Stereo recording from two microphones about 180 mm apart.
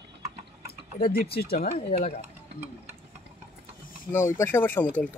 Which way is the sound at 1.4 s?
60° left (ahead or behind).